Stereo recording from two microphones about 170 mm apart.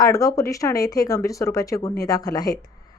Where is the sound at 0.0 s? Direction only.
20° left (ahead or behind).